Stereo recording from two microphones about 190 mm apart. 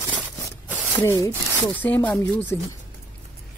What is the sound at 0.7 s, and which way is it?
Zipper, 10° left (ahead or behind).